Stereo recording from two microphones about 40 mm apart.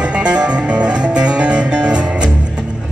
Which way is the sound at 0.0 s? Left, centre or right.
Right.